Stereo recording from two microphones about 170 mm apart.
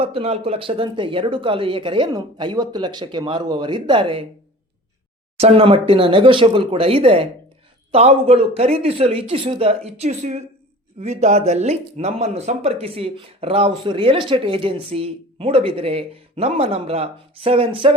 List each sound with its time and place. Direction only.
0.0 s speech: 35° right (ahead or behind)
5.4 s speech: 35° right (ahead or behind)